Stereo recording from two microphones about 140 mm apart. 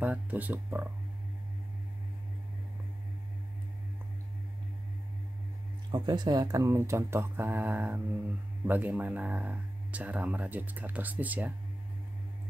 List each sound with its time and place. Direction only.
0.0 s speech: 10° right (ahead or behind)
5.9 s speech: 30° right (ahead or behind); by 11.5 s 10° right (ahead or behind)